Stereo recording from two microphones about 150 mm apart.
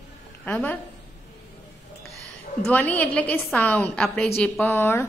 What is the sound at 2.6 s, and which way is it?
A woman's voice, 10° left (ahead or behind).